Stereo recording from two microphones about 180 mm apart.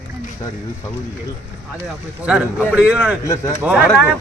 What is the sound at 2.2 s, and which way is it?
Speech, 5° right (ahead or behind).